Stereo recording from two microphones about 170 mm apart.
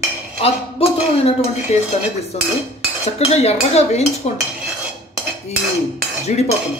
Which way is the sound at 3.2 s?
40° left (ahead or behind).